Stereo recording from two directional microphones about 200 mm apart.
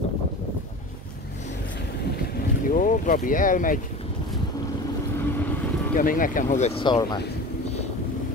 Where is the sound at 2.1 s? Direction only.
50° left (ahead or behind).